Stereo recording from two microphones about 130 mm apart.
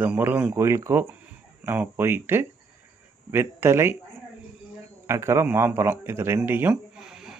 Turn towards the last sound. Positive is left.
turn(degrees=-5)  # may be behind; listen again after turning